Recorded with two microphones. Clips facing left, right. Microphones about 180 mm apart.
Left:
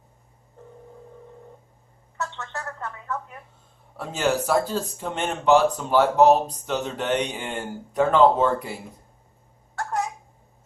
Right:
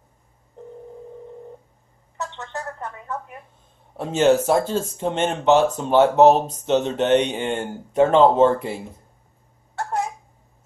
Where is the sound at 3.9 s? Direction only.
25° right (ahead or behind).